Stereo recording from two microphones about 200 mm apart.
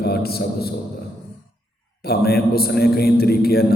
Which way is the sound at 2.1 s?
50° left (ahead or behind).